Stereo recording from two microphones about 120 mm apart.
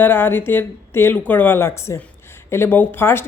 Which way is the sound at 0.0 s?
20° left (ahead or behind).